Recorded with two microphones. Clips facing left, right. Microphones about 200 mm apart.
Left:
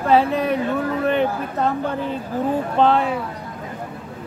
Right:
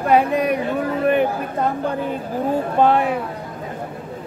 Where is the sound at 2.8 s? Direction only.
15° right (ahead or behind).